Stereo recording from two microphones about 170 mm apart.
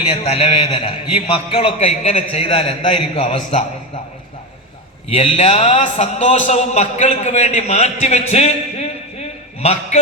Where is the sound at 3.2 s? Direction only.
45° left (ahead or behind).